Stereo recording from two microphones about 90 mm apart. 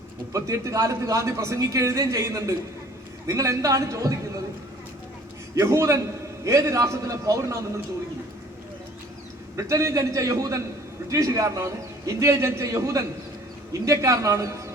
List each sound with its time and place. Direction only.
0.3 s a man's voice: 35° right (ahead or behind)
5.5 s a man's voice: 35° right (ahead or behind)
9.6 s a man's voice: 35° right (ahead or behind)